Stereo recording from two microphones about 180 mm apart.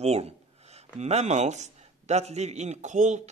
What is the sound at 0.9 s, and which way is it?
A man's voice, 35° right (ahead or behind).